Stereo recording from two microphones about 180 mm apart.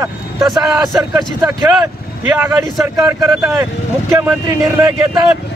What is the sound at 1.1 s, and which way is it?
Speech, 15° right (ahead or behind).